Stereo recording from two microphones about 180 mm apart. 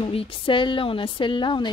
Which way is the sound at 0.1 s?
30° left (ahead or behind).